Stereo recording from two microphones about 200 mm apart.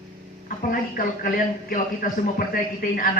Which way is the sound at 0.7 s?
45° left (ahead or behind).